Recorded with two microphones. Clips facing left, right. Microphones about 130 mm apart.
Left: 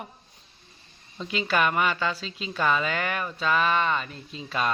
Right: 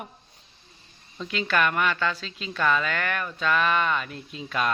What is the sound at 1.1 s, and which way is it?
Speech, 5° left (ahead or behind).